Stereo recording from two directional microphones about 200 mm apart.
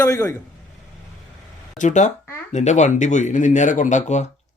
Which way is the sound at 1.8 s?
35° left (ahead or behind).